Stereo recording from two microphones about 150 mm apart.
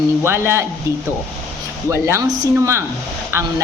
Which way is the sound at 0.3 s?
15° right (ahead or behind).